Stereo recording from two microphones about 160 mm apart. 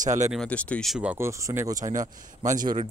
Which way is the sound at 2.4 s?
55° right (ahead or behind).